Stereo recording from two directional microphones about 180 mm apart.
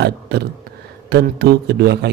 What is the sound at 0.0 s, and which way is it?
A man's voice, 65° right (ahead or behind).